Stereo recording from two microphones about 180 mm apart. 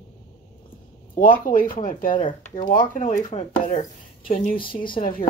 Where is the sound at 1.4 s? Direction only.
50° left (ahead or behind).